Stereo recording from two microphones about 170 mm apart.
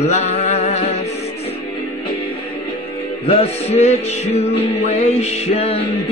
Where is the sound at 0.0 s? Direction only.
40° left (ahead or behind).